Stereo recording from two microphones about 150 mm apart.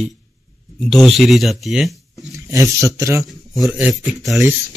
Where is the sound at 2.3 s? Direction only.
20° right (ahead or behind).